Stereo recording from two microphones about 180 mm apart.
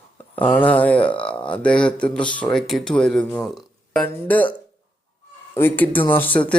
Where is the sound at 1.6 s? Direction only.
5° left (ahead or behind).